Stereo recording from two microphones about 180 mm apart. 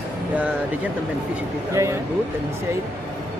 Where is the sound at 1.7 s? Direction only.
15° right (ahead or behind).